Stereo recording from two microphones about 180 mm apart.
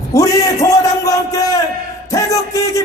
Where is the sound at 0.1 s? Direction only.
20° left (ahead or behind).